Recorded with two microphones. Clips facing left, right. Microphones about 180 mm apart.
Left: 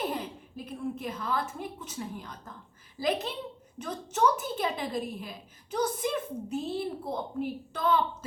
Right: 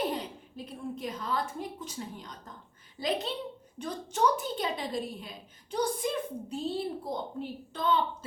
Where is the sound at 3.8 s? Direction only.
5° left (ahead or behind).